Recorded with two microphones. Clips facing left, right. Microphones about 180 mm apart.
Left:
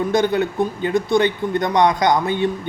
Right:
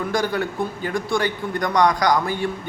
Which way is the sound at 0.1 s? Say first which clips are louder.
Left 5 dB; 20° left (ahead or behind).